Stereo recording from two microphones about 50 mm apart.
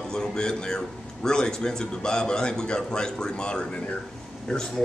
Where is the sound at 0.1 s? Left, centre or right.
Centre.